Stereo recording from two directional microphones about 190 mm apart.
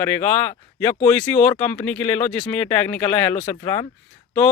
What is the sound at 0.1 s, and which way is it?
Speech, 10° left (ahead or behind).